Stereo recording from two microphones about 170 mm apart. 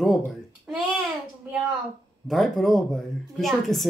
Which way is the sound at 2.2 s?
Centre (ahead or behind).